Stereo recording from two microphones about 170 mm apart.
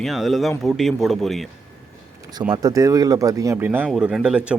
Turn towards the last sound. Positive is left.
turn(degrees=-5)  # may be behind; listen again after turning